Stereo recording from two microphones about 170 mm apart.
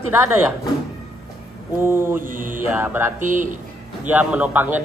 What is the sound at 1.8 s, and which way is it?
Speech, 15° right (ahead or behind).